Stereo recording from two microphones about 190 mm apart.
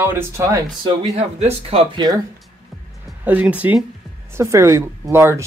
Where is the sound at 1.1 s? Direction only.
30° right (ahead or behind).